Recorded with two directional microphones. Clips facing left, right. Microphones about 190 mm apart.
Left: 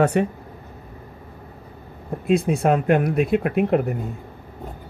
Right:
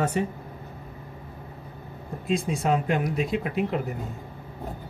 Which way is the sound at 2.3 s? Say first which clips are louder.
Left 6 dB; 60° left (ahead or behind).